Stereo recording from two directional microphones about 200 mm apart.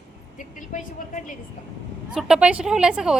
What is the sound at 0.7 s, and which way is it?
Vehicle, 40° left (ahead or behind).